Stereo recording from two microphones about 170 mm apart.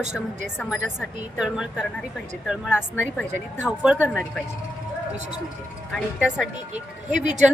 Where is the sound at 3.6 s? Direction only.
5° right (ahead or behind).